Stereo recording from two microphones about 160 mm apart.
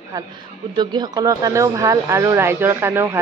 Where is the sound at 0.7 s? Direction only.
25° right (ahead or behind).